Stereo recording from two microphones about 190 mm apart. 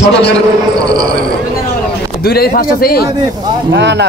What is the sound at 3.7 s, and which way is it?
Speech, 65° right (ahead or behind).